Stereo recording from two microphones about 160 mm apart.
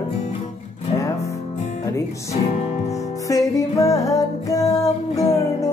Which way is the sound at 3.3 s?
20° left (ahead or behind).